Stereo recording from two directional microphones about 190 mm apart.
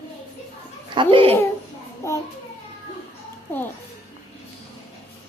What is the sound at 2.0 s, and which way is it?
Speech, 15° left (ahead or behind).